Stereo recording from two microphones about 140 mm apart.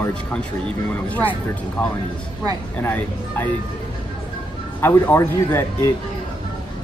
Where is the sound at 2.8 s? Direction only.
15° left (ahead or behind).